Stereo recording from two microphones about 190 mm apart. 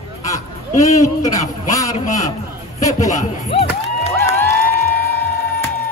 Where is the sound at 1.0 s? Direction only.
15° left (ahead or behind).